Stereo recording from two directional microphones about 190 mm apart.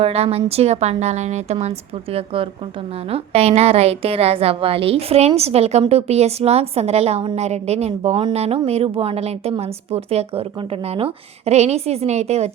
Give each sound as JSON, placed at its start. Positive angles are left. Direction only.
{"t": 0.0, "sound": "a woman's voice", "side_deg": -30}